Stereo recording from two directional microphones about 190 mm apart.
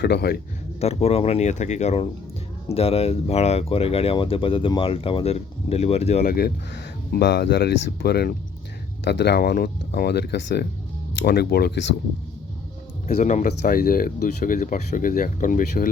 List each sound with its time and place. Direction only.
0.0 s speech: 60° left (ahead or behind)
0.8 s speech: 35° left (ahead or behind)
6.2 s speech: 55° left (ahead or behind)
13.1 s speech: 40° left (ahead or behind)
13.5 s speech: 55° left (ahead or behind)